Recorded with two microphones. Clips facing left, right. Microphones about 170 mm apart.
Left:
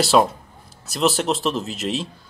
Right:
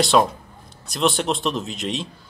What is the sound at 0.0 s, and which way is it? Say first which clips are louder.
A man's voice: left 1 dB; 5° left (ahead or behind).